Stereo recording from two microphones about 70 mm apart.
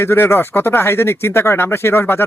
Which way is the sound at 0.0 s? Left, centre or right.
Left.